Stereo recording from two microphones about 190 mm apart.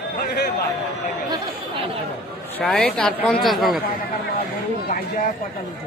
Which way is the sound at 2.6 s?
5° left (ahead or behind).